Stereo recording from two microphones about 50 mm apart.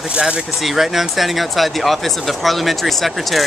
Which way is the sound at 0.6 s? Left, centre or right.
Centre.